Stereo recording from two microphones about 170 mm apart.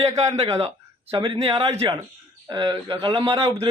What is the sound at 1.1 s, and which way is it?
Speech, 30° right (ahead or behind).